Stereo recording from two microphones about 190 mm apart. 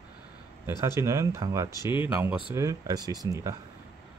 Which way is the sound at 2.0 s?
15° right (ahead or behind).